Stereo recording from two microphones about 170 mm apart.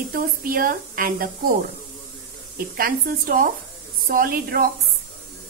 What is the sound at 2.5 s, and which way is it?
Speech, 60° right (ahead or behind).